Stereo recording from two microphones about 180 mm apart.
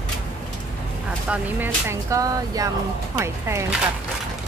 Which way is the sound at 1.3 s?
10° right (ahead or behind).